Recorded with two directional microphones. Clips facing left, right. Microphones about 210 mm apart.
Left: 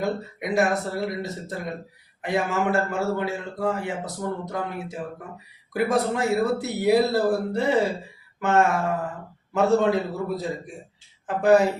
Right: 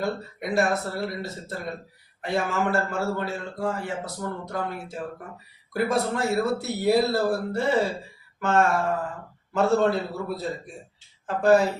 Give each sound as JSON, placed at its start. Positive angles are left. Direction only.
{"t": 0.0, "sound": "a man's voice", "side_deg": 15}